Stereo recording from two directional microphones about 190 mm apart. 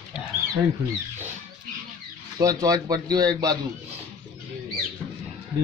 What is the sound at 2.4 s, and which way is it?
Speech, 20° right (ahead or behind).